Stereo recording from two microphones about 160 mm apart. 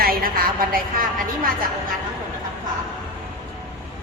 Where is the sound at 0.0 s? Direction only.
65° right (ahead or behind).